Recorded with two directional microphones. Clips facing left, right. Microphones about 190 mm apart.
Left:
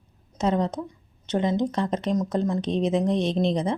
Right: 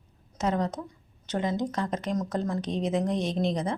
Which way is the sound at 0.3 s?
25° left (ahead or behind).